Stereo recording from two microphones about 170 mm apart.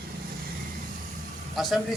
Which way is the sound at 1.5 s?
Centre (ahead or behind).